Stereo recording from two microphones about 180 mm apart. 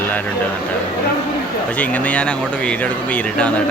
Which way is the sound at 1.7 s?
10° left (ahead or behind).